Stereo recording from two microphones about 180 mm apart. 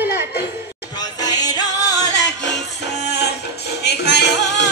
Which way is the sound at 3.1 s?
70° left (ahead or behind).